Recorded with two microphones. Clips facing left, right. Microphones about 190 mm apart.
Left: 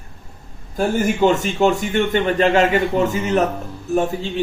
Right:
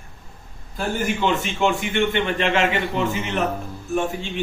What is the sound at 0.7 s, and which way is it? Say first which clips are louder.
A man's voice: left 6 dB; 45° left (ahead or behind).